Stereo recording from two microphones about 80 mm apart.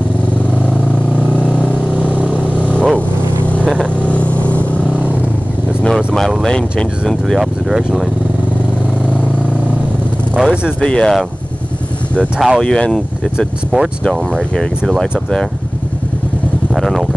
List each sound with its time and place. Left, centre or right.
2.2 s vehicle: centre
5.9 s vehicle: centre
6.4 s speech: centre
10.4 s speech: centre
10.8 s speech: centre
12.4 s speech: centre
12.6 s speech: centre
14.9 s speech: centre
16.7 s speech: centre